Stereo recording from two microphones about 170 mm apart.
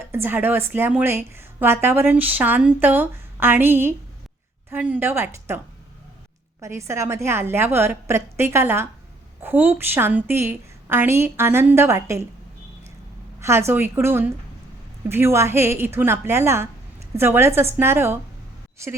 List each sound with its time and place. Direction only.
0.1 s a woman's voice: 10° right (ahead or behind)
6.6 s a woman's voice: 15° right (ahead or behind)
13.4 s a woman's voice: 15° right (ahead or behind)